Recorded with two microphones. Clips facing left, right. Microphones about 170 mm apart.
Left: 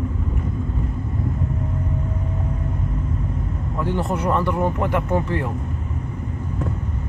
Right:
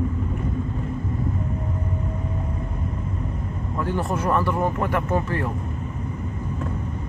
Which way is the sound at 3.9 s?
20° left (ahead or behind).